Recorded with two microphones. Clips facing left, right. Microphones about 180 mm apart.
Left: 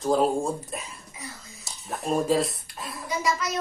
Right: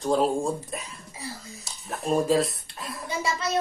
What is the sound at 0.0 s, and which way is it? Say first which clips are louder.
Speech: left 1 dB; centre (ahead or behind).